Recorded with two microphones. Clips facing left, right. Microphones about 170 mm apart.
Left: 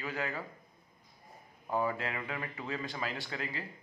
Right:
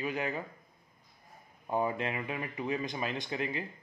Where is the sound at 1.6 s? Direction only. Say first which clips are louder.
Right 2 dB; 20° right (ahead or behind).